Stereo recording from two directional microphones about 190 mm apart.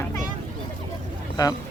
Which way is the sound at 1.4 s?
20° left (ahead or behind).